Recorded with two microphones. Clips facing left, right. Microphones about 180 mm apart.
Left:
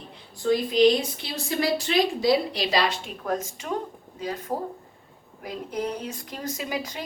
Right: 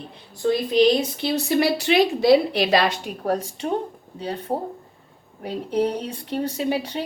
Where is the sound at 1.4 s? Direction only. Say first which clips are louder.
Right 3 dB; 70° right (ahead or behind).